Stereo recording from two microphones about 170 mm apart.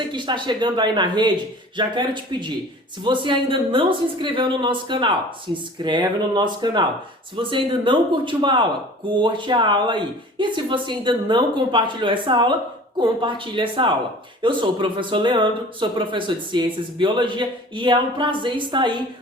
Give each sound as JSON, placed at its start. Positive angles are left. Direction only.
{"t": 0.1, "sound": "speech", "side_deg": -25}